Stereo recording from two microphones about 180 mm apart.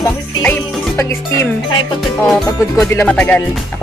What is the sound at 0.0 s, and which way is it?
Music, 10° left (ahead or behind).